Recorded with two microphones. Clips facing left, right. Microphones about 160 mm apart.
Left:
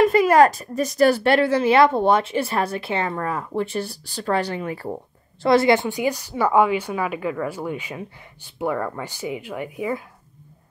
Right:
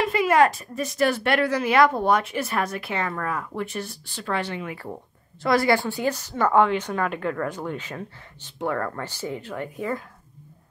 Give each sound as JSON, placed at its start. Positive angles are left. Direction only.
{"t": 0.0, "sound": "a woman's voice", "side_deg": 40}
{"t": 5.4, "sound": "speech", "side_deg": 25}